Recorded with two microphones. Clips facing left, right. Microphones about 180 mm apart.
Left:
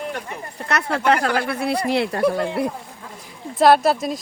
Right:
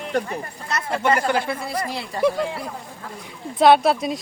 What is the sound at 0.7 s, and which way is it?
Speech, 75° left (ahead or behind).